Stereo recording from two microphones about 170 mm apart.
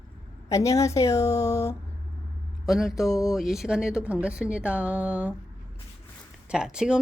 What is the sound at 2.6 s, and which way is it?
A woman's voice, centre (ahead or behind).